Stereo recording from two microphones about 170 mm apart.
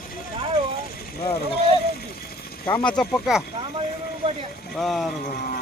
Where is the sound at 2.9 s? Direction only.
Centre (ahead or behind).